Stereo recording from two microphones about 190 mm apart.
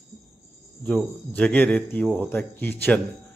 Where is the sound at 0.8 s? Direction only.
5° left (ahead or behind).